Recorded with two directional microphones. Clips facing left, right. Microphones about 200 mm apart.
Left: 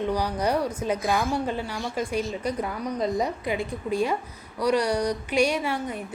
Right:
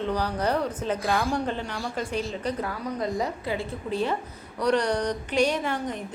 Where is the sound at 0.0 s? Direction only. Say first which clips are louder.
Left 1 dB; 10° left (ahead or behind).